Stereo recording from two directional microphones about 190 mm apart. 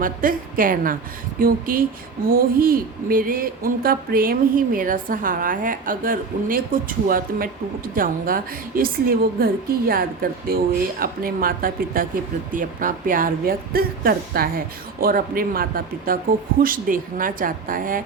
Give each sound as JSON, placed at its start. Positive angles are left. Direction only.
{"t": 0.0, "sound": "speech", "side_deg": -45}